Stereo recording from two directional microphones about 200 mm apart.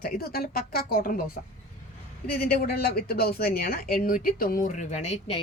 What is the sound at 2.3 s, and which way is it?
A woman's voice, 45° left (ahead or behind).